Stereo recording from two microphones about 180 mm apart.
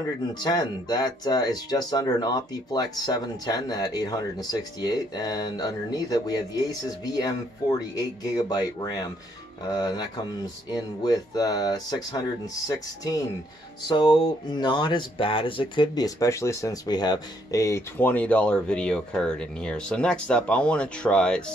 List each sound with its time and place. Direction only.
0.3 s speech: 25° left (ahead or behind); by 21.4 s 5° left (ahead or behind)